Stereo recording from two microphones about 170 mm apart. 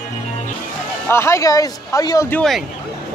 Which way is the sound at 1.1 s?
15° left (ahead or behind).